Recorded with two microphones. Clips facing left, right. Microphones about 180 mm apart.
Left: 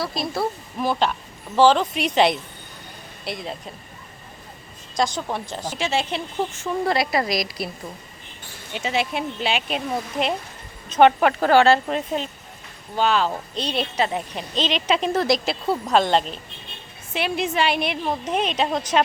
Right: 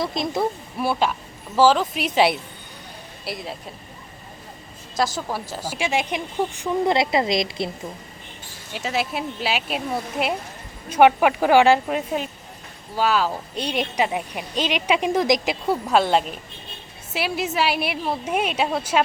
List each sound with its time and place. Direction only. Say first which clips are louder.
0.0 s speech: right 2 dB; 20° right (ahead or behind)
0.8 s speech: even; 10° right (ahead or behind)
4.9 s speech: even; 5° right (ahead or behind); by 7.7 s 25° right (ahead or behind)
8.7 s speech: left 1 dB; centre (ahead or behind)